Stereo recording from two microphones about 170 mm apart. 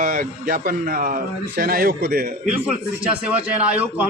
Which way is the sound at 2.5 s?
5° right (ahead or behind).